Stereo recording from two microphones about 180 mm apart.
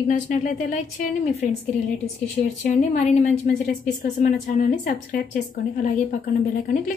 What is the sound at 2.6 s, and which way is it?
A woman's voice, 40° left (ahead or behind).